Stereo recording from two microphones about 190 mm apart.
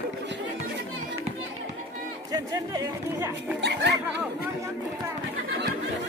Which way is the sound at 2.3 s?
20° right (ahead or behind).